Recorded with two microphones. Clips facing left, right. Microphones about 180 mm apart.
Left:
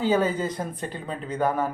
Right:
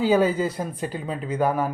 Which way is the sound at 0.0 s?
10° right (ahead or behind).